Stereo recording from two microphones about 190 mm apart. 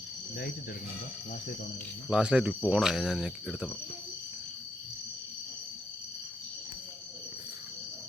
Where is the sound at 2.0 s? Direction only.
5° right (ahead or behind).